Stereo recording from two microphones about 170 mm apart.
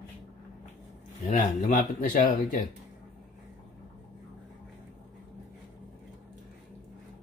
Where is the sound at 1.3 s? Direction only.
50° left (ahead or behind).